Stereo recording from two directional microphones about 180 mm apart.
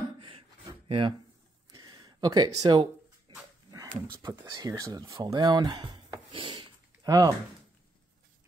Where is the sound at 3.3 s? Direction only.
25° right (ahead or behind).